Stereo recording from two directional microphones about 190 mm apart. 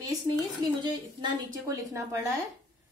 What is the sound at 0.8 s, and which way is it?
A woman's voice, 20° right (ahead or behind).